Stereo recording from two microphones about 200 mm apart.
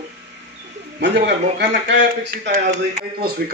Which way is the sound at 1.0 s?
60° right (ahead or behind).